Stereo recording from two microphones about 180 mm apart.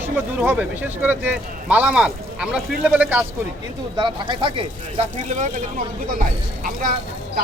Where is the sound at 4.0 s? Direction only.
30° right (ahead or behind).